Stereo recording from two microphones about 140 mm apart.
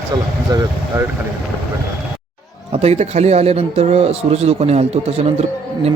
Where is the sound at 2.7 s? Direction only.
50° right (ahead or behind).